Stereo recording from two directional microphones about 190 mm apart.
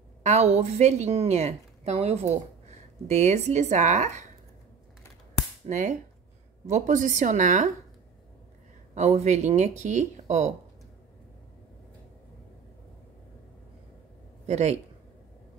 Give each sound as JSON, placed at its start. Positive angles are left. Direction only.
{"t": 0.2, "sound": "a woman's voice", "side_deg": -35}
{"t": 5.7, "sound": "a woman's voice", "side_deg": -40}
{"t": 8.9, "sound": "a woman's voice", "side_deg": -35}
{"t": 14.4, "sound": "speech", "side_deg": -35}